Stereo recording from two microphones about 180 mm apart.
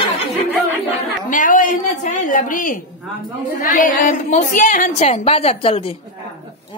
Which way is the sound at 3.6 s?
50° left (ahead or behind).